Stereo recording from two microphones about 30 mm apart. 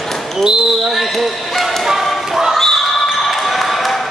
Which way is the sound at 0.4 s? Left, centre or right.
Centre.